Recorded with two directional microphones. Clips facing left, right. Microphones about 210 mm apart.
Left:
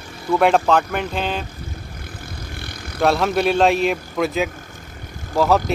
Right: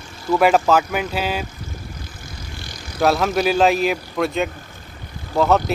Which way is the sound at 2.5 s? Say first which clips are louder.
Left 2 dB; 60° left (ahead or behind).